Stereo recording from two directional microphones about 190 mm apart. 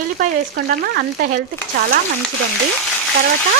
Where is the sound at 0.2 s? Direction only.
50° right (ahead or behind).